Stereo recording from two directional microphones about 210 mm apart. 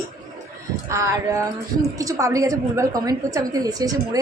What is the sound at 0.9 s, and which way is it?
A woman's voice, 15° right (ahead or behind).